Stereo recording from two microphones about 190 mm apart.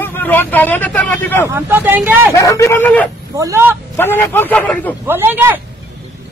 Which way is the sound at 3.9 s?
10° left (ahead or behind).